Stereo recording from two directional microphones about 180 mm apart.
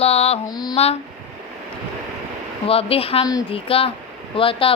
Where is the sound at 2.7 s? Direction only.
30° left (ahead or behind).